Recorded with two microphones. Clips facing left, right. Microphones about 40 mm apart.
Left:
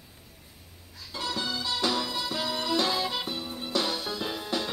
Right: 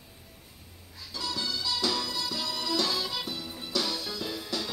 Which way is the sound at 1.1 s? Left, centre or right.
Left.